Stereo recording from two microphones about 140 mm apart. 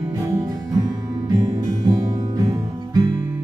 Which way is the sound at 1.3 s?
25° right (ahead or behind).